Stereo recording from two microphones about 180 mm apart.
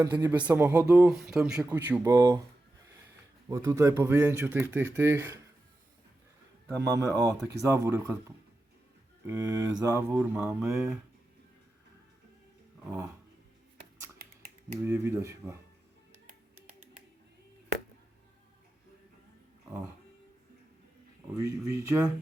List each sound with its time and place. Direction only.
0.0 s speech: 15° right (ahead or behind)
2.1 s speech: 20° right (ahead or behind)
3.5 s speech: 15° right (ahead or behind)
6.7 s speech: 15° right (ahead or behind)
9.2 s speech: 15° right (ahead or behind)
12.8 s dog: 5° right (ahead or behind)
14.2 s finger snapping: 50° right (ahead or behind)
14.8 s speech: 15° right (ahead or behind)
21.3 s speech: 20° right (ahead or behind)